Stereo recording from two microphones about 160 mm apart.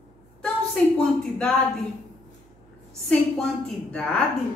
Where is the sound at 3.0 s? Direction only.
5° left (ahead or behind).